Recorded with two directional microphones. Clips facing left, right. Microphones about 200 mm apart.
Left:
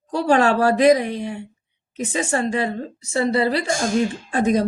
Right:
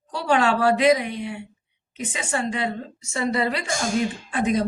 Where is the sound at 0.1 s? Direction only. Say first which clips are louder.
Left 4 dB; 40° left (ahead or behind).